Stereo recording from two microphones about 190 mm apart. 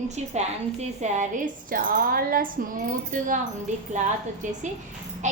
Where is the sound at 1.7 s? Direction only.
50° right (ahead or behind).